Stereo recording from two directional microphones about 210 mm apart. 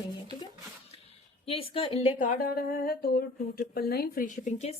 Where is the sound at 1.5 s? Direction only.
25° left (ahead or behind).